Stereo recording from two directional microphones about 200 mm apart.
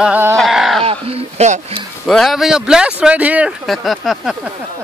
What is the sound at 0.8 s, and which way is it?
A man's voice, 30° right (ahead or behind).